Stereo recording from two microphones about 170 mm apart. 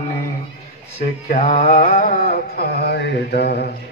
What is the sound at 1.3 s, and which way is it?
Mantra, 50° left (ahead or behind).